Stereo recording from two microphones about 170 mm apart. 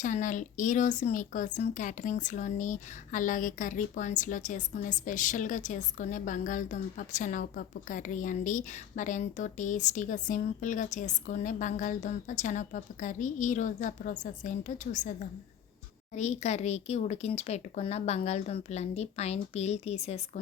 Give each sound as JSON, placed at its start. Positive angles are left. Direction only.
{"t": 0.0, "sound": "speech", "side_deg": 50}
{"t": 16.1, "sound": "speech", "side_deg": 40}